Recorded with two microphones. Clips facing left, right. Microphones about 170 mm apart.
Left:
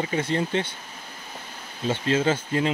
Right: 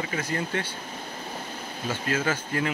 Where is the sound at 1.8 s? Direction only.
25° left (ahead or behind).